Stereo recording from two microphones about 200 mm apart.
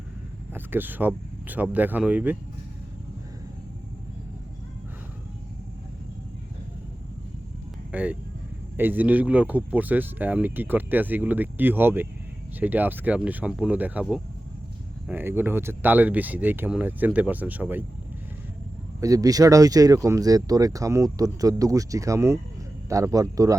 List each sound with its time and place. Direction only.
0.5 s speech: 10° right (ahead or behind)
7.9 s speech: 5° right (ahead or behind)
18.9 s speech: 15° right (ahead or behind)